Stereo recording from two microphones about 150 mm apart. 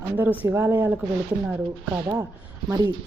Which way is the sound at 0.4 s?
15° right (ahead or behind).